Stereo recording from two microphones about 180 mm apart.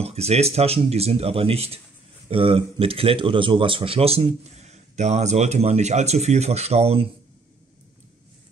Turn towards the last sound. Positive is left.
turn(degrees=-35)  # may be behind; listen again after turning